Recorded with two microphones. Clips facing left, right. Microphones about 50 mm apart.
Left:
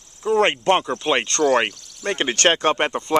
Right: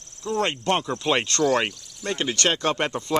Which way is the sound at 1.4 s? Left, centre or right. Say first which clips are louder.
Left 4 dB; left.